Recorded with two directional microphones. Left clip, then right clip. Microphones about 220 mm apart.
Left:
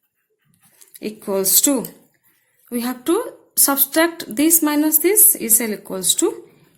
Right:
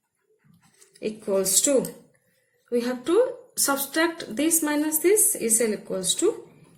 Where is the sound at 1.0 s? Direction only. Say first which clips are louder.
Left 3 dB; 45° left (ahead or behind).